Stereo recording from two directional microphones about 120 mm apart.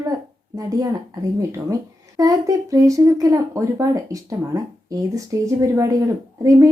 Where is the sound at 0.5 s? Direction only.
30° right (ahead or behind).